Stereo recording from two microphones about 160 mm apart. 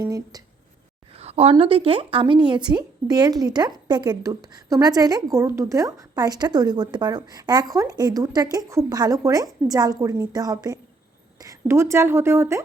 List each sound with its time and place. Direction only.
0.0 s a woman's voice: 20° right (ahead or behind)
1.1 s a woman's voice: 40° right (ahead or behind); by 12.6 s 15° right (ahead or behind)